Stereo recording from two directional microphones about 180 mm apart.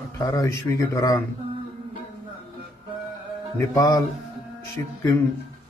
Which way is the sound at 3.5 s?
15° left (ahead or behind).